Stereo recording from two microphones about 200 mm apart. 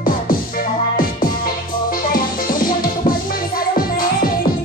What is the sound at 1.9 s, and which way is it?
Music, 45° left (ahead or behind).